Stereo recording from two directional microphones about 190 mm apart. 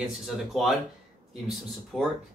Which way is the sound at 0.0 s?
Centre (ahead or behind).